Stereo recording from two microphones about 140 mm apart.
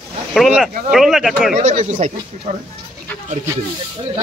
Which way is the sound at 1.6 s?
55° right (ahead or behind).